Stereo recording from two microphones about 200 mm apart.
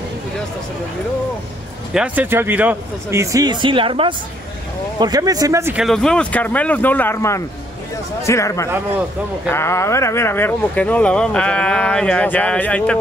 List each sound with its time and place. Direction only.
2.0 s speech: 10° right (ahead or behind)
5.9 s speech: 5° left (ahead or behind)